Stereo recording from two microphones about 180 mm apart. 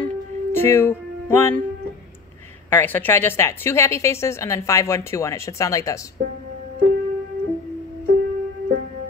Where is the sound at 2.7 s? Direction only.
10° left (ahead or behind).